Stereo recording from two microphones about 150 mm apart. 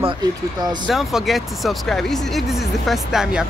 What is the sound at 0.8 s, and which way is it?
Speech, centre (ahead or behind).